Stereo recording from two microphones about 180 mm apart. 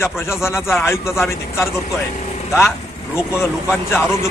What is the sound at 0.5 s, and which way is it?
Speech, centre (ahead or behind).